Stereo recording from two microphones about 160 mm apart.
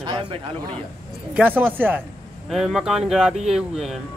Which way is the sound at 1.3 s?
10° right (ahead or behind).